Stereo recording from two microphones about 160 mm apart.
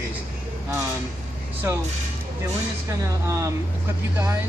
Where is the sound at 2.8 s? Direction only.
20° right (ahead or behind).